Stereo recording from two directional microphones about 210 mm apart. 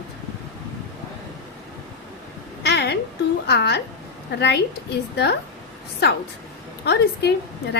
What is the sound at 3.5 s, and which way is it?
A woman's voice, 50° left (ahead or behind).